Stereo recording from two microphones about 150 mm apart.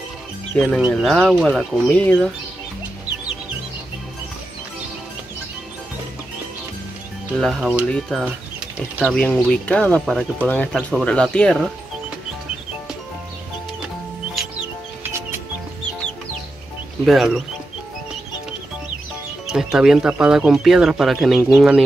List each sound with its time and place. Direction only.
0.6 s speech: centre (ahead or behind)
7.5 s speech: 10° right (ahead or behind)
9.0 s speech: 5° left (ahead or behind)
17.0 s speech: centre (ahead or behind)
19.4 s speech: 5° right (ahead or behind)